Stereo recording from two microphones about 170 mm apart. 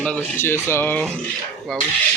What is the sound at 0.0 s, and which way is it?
Speech, 10° left (ahead or behind).